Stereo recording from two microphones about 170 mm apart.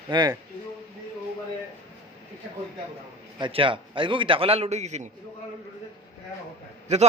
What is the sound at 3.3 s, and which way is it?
A man's voice, 30° right (ahead or behind).